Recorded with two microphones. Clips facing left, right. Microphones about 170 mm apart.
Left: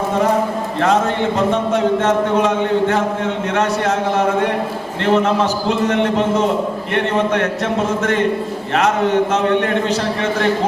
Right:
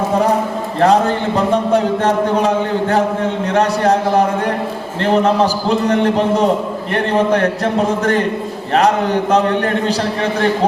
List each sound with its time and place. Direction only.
0.8 s a man's voice: 35° right (ahead or behind)